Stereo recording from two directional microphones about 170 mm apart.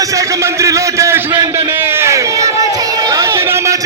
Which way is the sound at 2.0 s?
20° right (ahead or behind).